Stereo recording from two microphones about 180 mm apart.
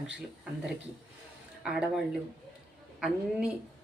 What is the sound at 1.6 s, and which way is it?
A woman's voice, 5° right (ahead or behind).